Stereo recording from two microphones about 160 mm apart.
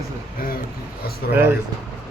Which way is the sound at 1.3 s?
15° right (ahead or behind).